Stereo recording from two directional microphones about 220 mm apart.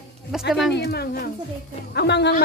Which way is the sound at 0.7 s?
45° left (ahead or behind).